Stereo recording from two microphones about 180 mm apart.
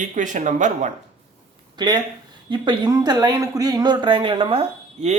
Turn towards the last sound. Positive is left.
turn(degrees=-35)  # may be behind; listen again after turning